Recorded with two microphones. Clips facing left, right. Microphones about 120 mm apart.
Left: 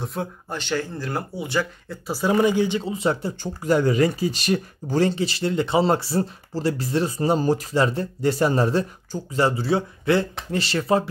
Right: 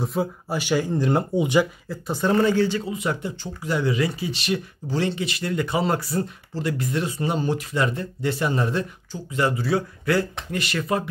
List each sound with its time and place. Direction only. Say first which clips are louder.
0.0 s speech: right 4 dB; centre (ahead or behind); by 1.7 s 15° right (ahead or behind)
1.9 s speech: even; 5° left (ahead or behind)
2.9 s speech: left 3 dB; 30° left (ahead or behind)